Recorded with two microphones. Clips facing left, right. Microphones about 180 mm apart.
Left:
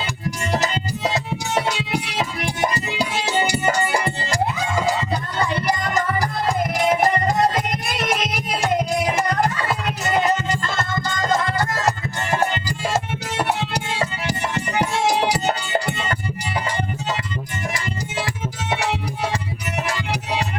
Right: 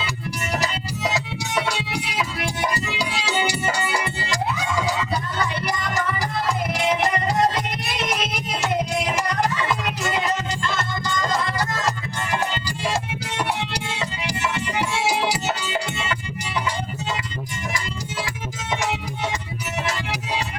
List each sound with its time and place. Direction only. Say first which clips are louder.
1.3 s music: left 3 dB; 40° left (ahead or behind)
10.2 s music: left 4 dB; 45° left (ahead or behind)
13.1 s music: left 3 dB; 50° left (ahead or behind)